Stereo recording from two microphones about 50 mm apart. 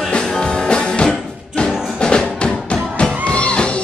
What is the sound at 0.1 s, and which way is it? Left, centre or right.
Music, centre.